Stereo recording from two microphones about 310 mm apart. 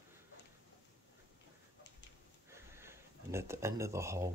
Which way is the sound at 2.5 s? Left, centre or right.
Centre.